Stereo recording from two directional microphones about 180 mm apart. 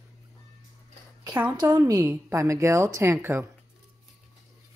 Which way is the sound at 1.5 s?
20° right (ahead or behind).